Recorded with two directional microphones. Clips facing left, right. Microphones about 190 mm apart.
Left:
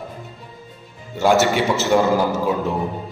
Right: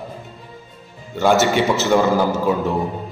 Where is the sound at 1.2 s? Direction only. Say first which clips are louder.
Right 1 dB; 5° left (ahead or behind).